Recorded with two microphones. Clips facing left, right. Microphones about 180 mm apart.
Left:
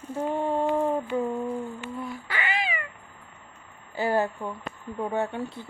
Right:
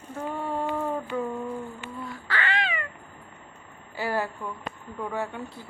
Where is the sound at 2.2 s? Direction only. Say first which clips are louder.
Right 3 dB; 15° left (ahead or behind).